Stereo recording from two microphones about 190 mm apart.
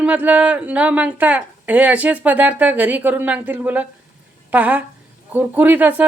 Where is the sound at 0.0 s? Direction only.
10° right (ahead or behind).